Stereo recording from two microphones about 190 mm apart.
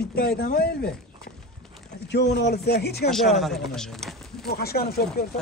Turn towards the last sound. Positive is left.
turn(degrees=55)  # may be behind; listen again after turning